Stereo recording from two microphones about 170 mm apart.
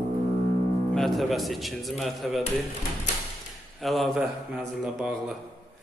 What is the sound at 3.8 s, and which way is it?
Speech, centre (ahead or behind).